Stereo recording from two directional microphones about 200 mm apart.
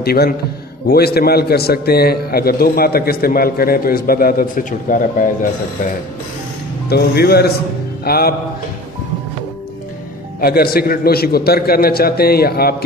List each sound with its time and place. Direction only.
0.0 s a man's voice: 50° left (ahead or behind)
6.9 s a man's voice: 50° left (ahead or behind)
8.0 s music: 50° left (ahead or behind)
10.4 s a man's voice: 50° left (ahead or behind)